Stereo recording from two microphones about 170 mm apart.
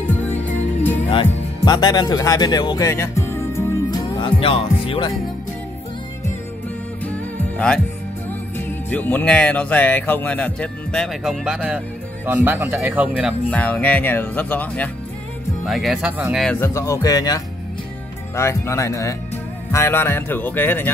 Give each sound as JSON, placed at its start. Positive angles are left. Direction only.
{"t": 0.0, "sound": "music", "side_deg": 10}
{"t": 1.1, "sound": "speech", "side_deg": 25}
{"t": 4.2, "sound": "music", "side_deg": 30}
{"t": 7.1, "sound": "music", "side_deg": 5}
{"t": 8.3, "sound": "speech", "side_deg": 10}
{"t": 13.5, "sound": "speech", "side_deg": 10}
{"t": 16.5, "sound": "speech", "side_deg": 20}